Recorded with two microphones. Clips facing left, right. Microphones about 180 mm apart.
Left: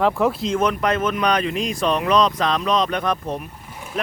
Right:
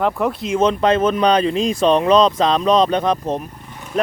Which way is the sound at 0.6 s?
25° right (ahead or behind).